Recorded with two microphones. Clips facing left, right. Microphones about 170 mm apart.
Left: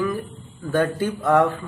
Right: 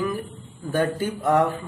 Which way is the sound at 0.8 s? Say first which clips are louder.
Left 2 dB; 15° right (ahead or behind).